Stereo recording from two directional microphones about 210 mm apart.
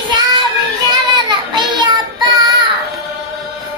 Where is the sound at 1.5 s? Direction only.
20° right (ahead or behind).